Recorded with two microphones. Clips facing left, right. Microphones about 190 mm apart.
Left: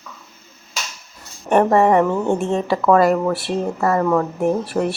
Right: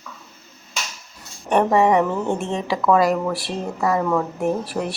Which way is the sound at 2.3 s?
40° left (ahead or behind).